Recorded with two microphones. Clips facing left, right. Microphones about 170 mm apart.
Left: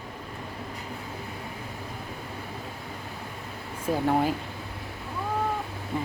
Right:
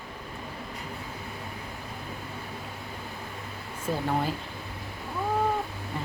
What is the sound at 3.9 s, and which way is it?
Speech, 10° left (ahead or behind).